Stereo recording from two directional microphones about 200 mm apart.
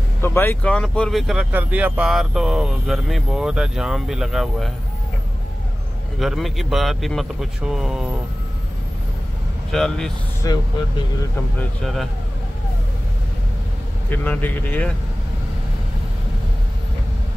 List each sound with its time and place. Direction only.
0.2 s speech: 10° left (ahead or behind)
6.1 s speech: centre (ahead or behind)
9.7 s speech: centre (ahead or behind)
10.4 s speech: 15° left (ahead or behind)
11.8 s speech: centre (ahead or behind)
14.1 s speech: 10° left (ahead or behind)